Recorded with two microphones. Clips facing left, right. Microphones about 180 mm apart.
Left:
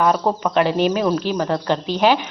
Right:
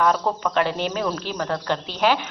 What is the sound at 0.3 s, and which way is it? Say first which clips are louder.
A woman's voice: left 4 dB; 20° left (ahead or behind).